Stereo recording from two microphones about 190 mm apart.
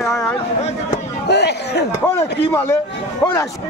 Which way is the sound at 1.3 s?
60° left (ahead or behind).